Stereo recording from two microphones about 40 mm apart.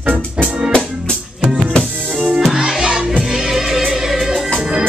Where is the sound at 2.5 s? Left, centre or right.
Centre.